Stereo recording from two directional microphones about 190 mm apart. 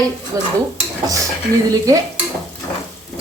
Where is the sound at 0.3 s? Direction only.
15° right (ahead or behind).